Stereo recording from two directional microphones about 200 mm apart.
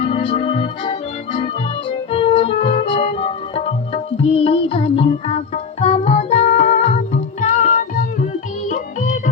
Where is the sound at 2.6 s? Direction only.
30° left (ahead or behind).